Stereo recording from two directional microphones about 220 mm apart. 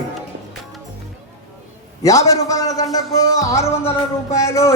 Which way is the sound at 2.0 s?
15° left (ahead or behind).